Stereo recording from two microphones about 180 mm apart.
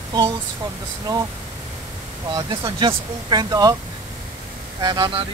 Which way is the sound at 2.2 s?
25° right (ahead or behind).